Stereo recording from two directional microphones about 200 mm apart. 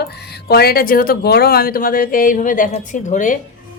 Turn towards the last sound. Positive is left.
turn(degrees=40)  # may be behind; listen again after turning